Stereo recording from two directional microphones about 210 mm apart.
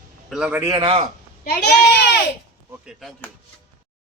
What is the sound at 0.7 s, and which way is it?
Speech, 25° right (ahead or behind).